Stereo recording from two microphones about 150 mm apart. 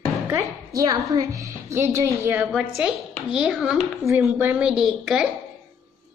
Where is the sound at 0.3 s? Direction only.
20° right (ahead or behind); by 5.3 s 5° right (ahead or behind).